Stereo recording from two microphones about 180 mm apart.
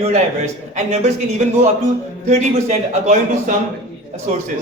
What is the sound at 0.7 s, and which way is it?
A man's voice, 40° right (ahead or behind).